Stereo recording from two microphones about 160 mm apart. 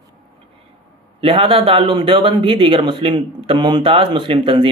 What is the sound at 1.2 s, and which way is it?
A man's voice, 35° right (ahead or behind).